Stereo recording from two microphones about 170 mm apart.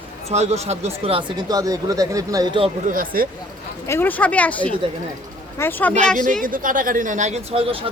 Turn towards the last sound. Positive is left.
turn(degrees=-45)  # may be behind; listen again after turning